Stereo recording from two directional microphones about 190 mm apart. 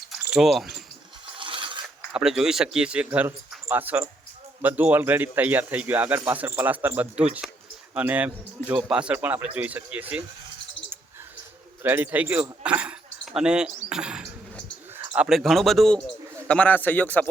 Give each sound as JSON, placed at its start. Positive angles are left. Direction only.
{"t": 0.3, "sound": "speech", "side_deg": 0}
{"t": 1.4, "sound": "mechanisms", "side_deg": -25}
{"t": 2.1, "sound": "speech", "side_deg": -5}
{"t": 11.8, "sound": "a man's voice", "side_deg": -10}